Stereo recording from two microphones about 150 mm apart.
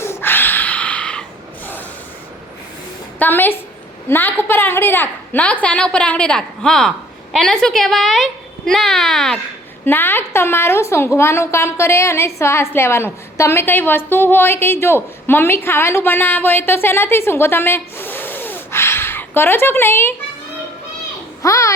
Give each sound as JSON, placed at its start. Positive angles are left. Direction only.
{"t": 0.0, "sound": "a sound", "side_deg": 15}
{"t": 3.2, "sound": "a woman's voice", "side_deg": 10}
{"t": 9.8, "sound": "a woman's voice", "side_deg": 15}
{"t": 21.4, "sound": "a child's voice", "side_deg": 20}